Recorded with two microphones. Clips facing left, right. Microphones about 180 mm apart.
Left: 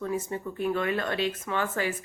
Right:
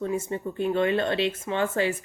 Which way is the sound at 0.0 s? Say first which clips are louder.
Right 3 dB; 30° right (ahead or behind).